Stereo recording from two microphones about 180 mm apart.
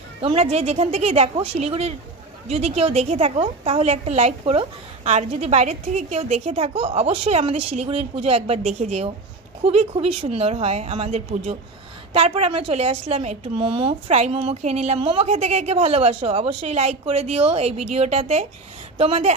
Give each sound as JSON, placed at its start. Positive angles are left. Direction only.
{"t": 0.2, "sound": "a woman's voice", "side_deg": -30}